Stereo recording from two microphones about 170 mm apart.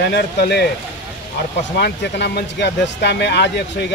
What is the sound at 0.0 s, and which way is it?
Speech, 75° left (ahead or behind).